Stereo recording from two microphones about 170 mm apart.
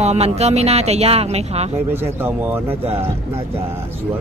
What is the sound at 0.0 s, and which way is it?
Speech, 40° right (ahead or behind).